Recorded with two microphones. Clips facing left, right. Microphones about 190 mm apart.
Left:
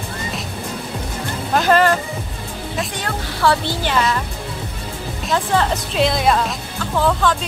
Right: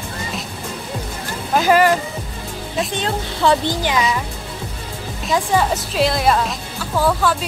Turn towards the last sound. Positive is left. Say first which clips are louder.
# even
turn(degrees=-5)  # may be behind; listen again after turning